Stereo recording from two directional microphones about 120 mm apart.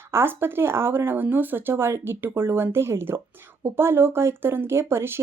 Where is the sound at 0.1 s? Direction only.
20° right (ahead or behind).